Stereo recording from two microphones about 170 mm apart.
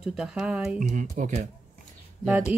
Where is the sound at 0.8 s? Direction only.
50° right (ahead or behind).